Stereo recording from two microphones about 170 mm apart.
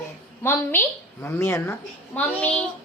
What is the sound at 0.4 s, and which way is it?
A woman's voice, 10° left (ahead or behind).